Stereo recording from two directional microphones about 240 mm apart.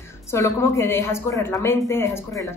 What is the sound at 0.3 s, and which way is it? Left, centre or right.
A woman's voice, centre.